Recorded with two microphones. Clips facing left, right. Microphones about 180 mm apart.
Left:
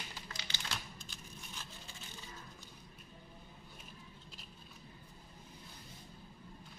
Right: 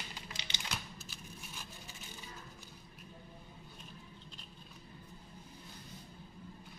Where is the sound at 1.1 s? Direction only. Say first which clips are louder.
Right 1 dB; 10° right (ahead or behind).